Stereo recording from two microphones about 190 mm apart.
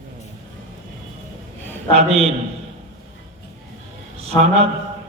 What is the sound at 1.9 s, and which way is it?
Speech, 35° right (ahead or behind).